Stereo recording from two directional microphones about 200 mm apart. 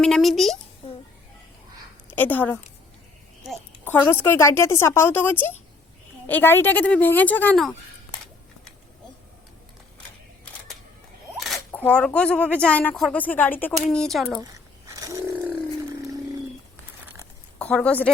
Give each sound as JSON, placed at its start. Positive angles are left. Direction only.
{"t": 0.0, "sound": "a woman's voice", "side_deg": 0}
{"t": 0.8, "sound": "a sound", "side_deg": 30}
{"t": 2.0, "sound": "speech", "side_deg": 10}
{"t": 11.3, "sound": "speech", "side_deg": 0}
{"t": 14.9, "sound": "mechanisms", "side_deg": -15}
{"t": 17.6, "sound": "a woman's voice", "side_deg": 5}